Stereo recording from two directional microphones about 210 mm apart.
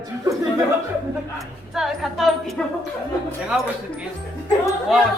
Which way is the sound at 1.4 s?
Centre (ahead or behind).